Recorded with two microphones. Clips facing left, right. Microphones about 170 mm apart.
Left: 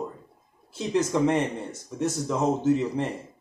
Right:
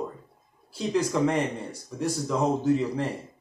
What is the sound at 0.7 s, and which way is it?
Speech, 20° left (ahead or behind).